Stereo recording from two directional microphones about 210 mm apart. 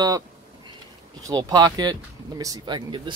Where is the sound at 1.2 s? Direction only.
15° right (ahead or behind).